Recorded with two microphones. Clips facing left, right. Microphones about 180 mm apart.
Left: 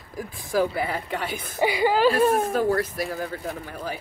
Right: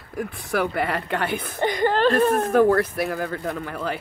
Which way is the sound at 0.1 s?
65° right (ahead or behind).